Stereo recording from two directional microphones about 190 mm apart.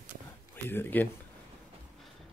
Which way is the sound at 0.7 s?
10° left (ahead or behind).